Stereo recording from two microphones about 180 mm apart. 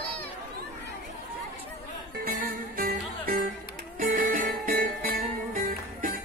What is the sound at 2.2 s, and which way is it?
Music, 55° right (ahead or behind).